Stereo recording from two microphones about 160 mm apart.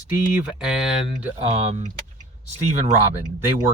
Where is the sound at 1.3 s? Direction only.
40° right (ahead or behind).